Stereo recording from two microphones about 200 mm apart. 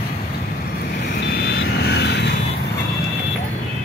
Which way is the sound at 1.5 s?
55° left (ahead or behind).